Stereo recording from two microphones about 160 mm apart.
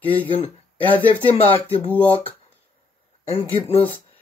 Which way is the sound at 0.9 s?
10° left (ahead or behind).